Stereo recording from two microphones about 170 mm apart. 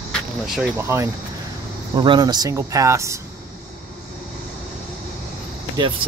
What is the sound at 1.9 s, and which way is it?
Speech, 25° right (ahead or behind).